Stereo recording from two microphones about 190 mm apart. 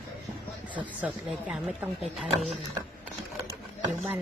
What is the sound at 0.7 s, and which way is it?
Speech, 10° right (ahead or behind).